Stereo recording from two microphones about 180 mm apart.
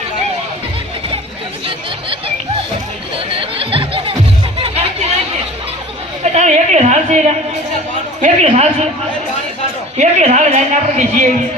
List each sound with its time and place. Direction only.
3.3 s music: 30° right (ahead or behind)
6.3 s a sound: 40° right (ahead or behind)
8.2 s a woman's voice: 40° right (ahead or behind)
10.0 s a woman's voice: 40° right (ahead or behind)